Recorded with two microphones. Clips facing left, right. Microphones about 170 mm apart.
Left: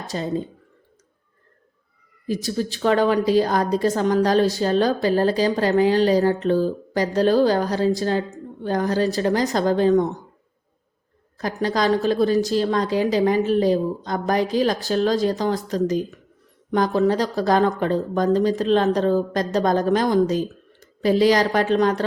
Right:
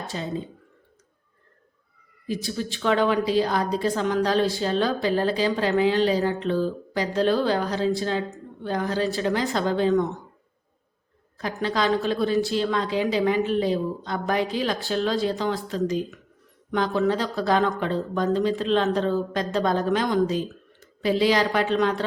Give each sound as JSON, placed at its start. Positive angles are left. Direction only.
{"t": 0.1, "sound": "speech", "side_deg": 45}
{"t": 2.2, "sound": "a woman's voice", "side_deg": 40}
{"t": 11.3, "sound": "a woman's voice", "side_deg": 40}